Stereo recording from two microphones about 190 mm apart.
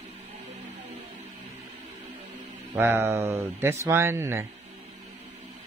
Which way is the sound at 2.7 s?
10° right (ahead or behind).